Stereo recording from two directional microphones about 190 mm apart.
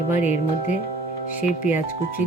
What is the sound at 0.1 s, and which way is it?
Speech, 40° left (ahead or behind).